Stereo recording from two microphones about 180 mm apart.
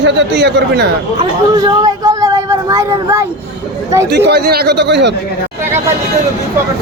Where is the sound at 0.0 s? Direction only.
75° right (ahead or behind).